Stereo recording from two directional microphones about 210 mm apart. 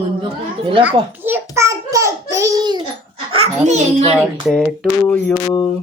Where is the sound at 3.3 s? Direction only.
30° right (ahead or behind).